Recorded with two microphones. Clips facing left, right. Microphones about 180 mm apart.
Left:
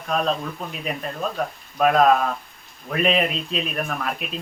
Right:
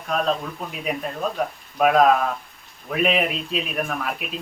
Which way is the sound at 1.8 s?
5° right (ahead or behind).